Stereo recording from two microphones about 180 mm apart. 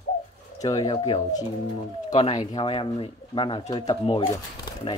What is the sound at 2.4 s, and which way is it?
Speech, 25° left (ahead or behind).